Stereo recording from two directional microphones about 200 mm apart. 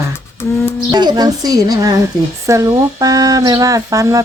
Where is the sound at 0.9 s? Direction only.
20° right (ahead or behind).